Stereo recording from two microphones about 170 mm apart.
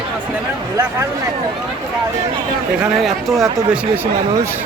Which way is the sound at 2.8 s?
Centre (ahead or behind).